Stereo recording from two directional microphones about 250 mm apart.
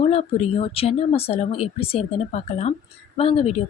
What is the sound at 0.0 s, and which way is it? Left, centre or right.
Speech, left.